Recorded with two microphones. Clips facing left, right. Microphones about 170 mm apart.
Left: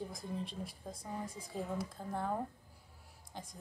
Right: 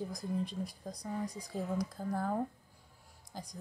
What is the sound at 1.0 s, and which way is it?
Speech, 25° left (ahead or behind).